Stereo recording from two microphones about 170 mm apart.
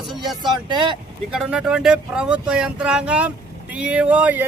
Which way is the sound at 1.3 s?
5° right (ahead or behind).